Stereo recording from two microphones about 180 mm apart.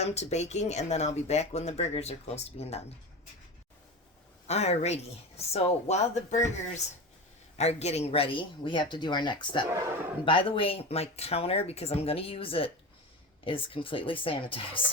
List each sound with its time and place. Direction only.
0.0 s speech: 35° left (ahead or behind)
4.4 s speech: 35° left (ahead or behind)
7.6 s speech: 35° left (ahead or behind)